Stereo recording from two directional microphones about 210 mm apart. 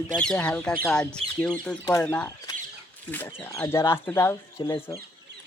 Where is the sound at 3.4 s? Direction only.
10° left (ahead or behind).